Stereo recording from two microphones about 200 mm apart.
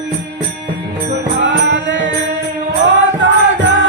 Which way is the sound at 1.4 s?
65° right (ahead or behind).